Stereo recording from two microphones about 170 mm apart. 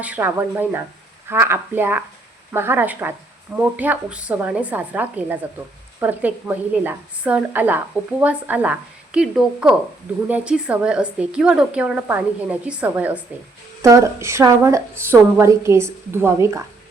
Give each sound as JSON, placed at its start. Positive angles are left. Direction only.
{"t": 0.0, "sound": "a woman's voice", "side_deg": -10}